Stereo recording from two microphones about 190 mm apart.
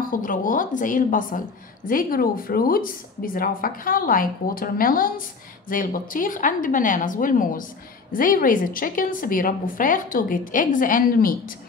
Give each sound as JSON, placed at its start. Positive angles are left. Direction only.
{"t": 0.0, "sound": "a woman's voice", "side_deg": 45}